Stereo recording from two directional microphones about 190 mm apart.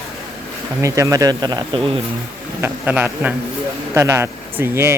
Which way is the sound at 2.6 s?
10° right (ahead or behind).